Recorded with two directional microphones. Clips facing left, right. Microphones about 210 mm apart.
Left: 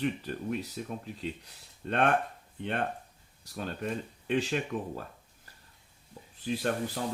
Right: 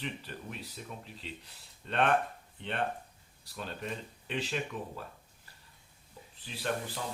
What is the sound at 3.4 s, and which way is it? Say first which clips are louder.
Speech: left 5 dB; 45° left (ahead or behind).